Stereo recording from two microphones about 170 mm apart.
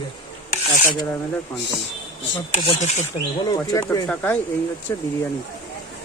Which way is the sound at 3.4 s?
20° left (ahead or behind).